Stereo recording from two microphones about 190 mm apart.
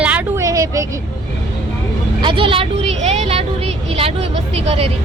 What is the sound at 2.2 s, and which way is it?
Speech, 25° right (ahead or behind).